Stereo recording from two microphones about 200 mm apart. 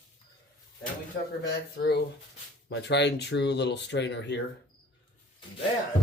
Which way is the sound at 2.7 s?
60° left (ahead or behind).